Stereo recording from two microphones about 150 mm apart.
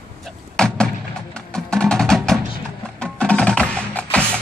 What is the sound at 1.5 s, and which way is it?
Music, 5° left (ahead or behind).